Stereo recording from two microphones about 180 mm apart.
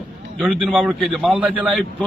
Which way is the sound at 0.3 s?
5° left (ahead or behind).